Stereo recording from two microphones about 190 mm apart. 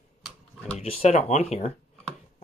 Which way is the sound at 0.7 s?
30° left (ahead or behind).